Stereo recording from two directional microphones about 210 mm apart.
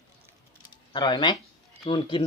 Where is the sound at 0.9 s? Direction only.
20° left (ahead or behind).